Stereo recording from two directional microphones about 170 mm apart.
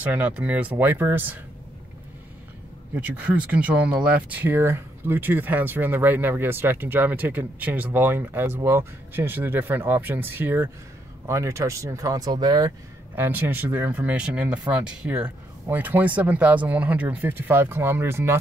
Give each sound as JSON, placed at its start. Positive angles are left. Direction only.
{"t": 0.0, "sound": "speech", "side_deg": -10}
{"t": 3.0, "sound": "speech", "side_deg": -10}
{"t": 13.2, "sound": "speech", "side_deg": -10}